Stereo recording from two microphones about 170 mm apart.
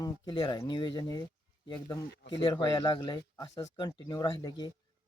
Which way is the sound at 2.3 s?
25° left (ahead or behind).